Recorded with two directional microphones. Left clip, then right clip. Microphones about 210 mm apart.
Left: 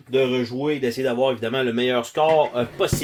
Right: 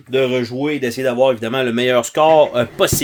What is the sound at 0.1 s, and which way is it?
Speech, 50° right (ahead or behind).